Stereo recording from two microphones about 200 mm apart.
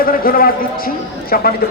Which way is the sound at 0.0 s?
45° left (ahead or behind).